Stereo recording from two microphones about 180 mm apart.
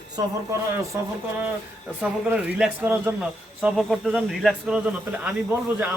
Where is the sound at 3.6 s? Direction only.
Centre (ahead or behind).